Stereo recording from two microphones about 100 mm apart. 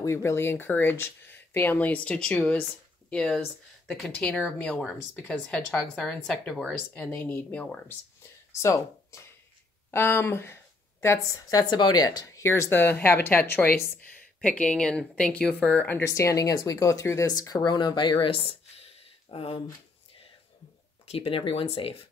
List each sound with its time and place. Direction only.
0.0 s a woman's voice: 30° left (ahead or behind)
8.2 s a woman's voice: 30° left (ahead or behind); by 16.0 s 15° left (ahead or behind)
16.0 s speech: 30° left (ahead or behind)
17.3 s speech: 40° left (ahead or behind); by 19.6 s 70° left (ahead or behind)
21.1 s speech: 65° left (ahead or behind)